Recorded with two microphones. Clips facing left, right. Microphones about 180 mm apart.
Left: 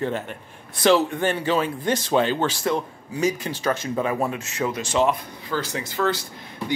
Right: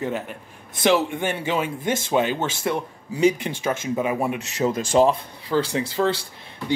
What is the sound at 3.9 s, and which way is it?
Speech, 10° right (ahead or behind).